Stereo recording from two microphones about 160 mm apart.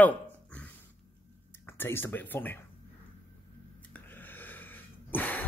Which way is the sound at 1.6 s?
15° left (ahead or behind).